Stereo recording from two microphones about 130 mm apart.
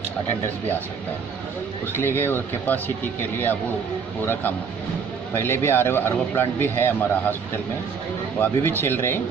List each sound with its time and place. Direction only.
1.9 s a man's voice: 15° left (ahead or behind)